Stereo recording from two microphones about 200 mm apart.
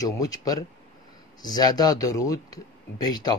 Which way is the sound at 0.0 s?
20° left (ahead or behind).